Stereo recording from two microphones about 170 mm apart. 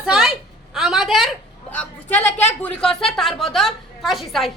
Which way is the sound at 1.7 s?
10° left (ahead or behind).